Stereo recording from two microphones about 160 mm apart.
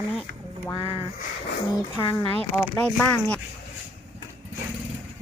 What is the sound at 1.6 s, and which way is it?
Speech, 25° left (ahead or behind).